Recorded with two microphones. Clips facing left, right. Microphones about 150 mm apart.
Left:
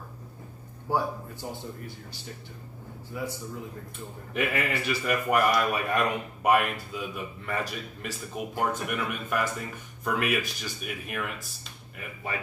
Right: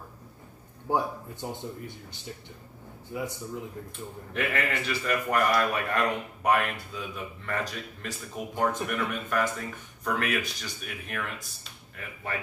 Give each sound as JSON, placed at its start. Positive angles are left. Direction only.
{"t": 0.8, "sound": "a man's voice", "side_deg": -20}
{"t": 3.1, "sound": "a man's voice", "side_deg": -20}
{"t": 4.3, "sound": "a man's voice", "side_deg": 5}